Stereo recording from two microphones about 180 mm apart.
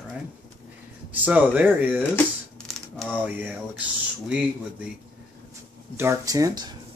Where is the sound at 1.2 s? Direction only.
10° right (ahead or behind).